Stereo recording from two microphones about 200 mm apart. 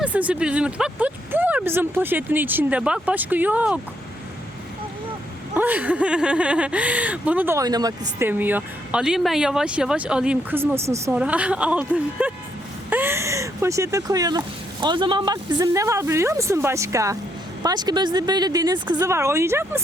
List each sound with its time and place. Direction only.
0.0 s speech: 5° right (ahead or behind)
5.5 s speech: 10° right (ahead or behind)